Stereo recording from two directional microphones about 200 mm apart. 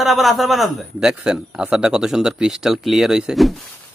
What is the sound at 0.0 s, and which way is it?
A man's voice, centre (ahead or behind).